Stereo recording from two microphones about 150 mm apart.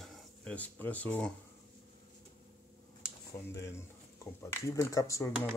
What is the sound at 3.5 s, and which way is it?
Speech, 20° left (ahead or behind).